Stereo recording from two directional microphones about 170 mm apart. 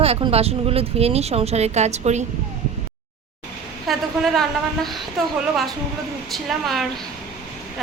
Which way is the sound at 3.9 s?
Centre (ahead or behind).